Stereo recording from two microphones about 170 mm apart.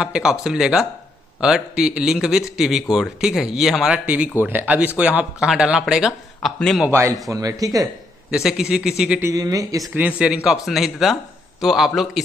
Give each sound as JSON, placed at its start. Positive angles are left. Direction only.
{"t": 0.0, "sound": "a man's voice", "side_deg": -5}
{"t": 6.9, "sound": "speech", "side_deg": -15}
{"t": 8.3, "sound": "a man's voice", "side_deg": -5}
{"t": 9.2, "sound": "speech", "side_deg": -20}
{"t": 9.9, "sound": "a man's voice", "side_deg": -5}